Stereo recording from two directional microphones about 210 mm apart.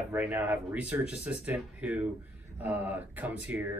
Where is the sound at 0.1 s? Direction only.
10° right (ahead or behind).